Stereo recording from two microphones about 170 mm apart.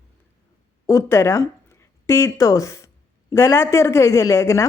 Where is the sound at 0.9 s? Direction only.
15° left (ahead or behind).